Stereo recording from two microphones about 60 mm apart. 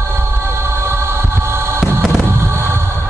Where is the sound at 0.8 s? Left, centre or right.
Right.